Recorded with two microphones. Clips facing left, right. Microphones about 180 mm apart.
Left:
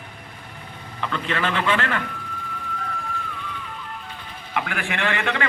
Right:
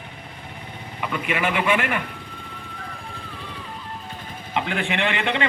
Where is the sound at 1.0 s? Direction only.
10° right (ahead or behind).